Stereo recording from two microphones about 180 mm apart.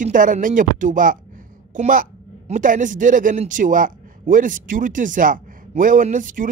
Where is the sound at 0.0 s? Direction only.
45° right (ahead or behind).